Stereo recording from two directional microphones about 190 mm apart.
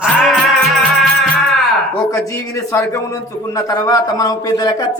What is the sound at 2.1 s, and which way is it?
A man's voice, 15° left (ahead or behind).